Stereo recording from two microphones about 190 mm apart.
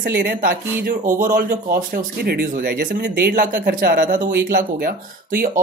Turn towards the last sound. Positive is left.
turn(degrees=-50)  # may be behind; listen again after turning